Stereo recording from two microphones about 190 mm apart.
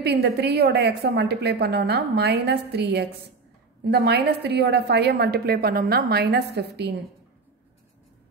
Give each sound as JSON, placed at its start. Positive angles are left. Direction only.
{"t": 0.0, "sound": "a woman's voice", "side_deg": -60}